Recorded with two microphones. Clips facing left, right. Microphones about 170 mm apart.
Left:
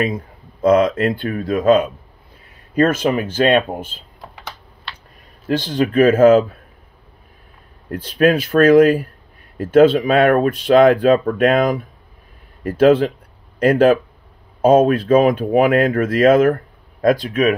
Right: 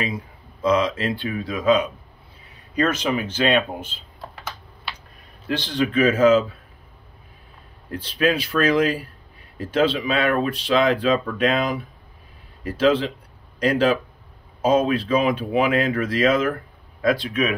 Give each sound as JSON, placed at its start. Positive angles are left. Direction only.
{"t": 0.0, "sound": "speech", "side_deg": 50}
{"t": 5.5, "sound": "speech", "side_deg": 45}
{"t": 7.9, "sound": "speech", "side_deg": 50}